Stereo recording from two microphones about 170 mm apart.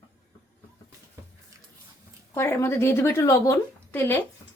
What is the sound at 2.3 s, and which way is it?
Speech, 15° left (ahead or behind).